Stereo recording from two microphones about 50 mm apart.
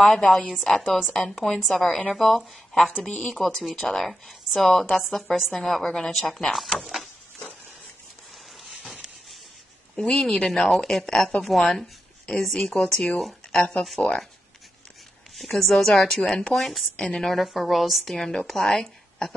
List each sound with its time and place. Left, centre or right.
0.2 s speech: left
0.5 s a woman's voice: centre
6.9 s a sound: centre
9.9 s a woman's voice: centre
15.3 s a woman's voice: centre
16.5 s a woman's voice: centre
17.4 s a woman's voice: centre